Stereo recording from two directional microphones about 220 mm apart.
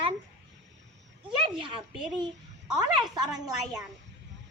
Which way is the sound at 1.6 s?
20° right (ahead or behind).